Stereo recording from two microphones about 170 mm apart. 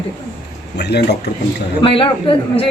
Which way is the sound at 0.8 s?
75° left (ahead or behind).